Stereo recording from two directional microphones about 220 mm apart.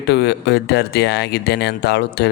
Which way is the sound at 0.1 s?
50° left (ahead or behind).